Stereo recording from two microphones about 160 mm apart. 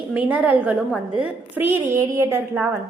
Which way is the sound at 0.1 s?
10° right (ahead or behind).